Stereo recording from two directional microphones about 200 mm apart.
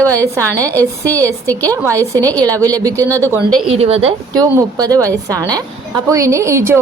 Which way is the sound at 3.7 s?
30° right (ahead or behind).